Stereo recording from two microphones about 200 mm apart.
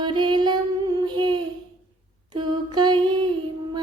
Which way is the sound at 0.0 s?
25° right (ahead or behind).